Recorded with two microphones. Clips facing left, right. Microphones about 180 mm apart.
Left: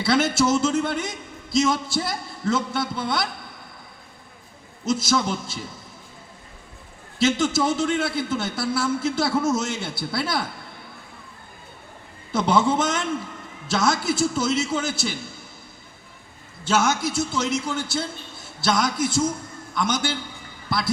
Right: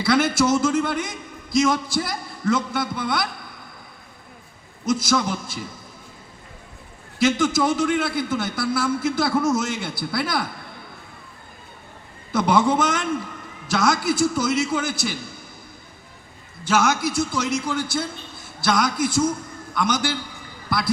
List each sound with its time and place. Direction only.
0.0 s a man's voice: 25° left (ahead or behind)
4.9 s a man's voice: 25° left (ahead or behind)
7.2 s a man's voice: 25° left (ahead or behind)
12.3 s a man's voice: 25° left (ahead or behind)
16.6 s a man's voice: 25° left (ahead or behind)
19.7 s a man's voice: 25° left (ahead or behind)